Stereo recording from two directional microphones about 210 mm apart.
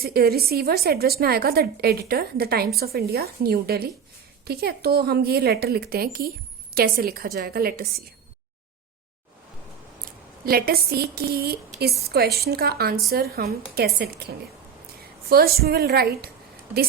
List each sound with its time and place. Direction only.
0.0 s a woman's voice: 45° right (ahead or behind)
10.4 s a woman's voice: 45° right (ahead or behind)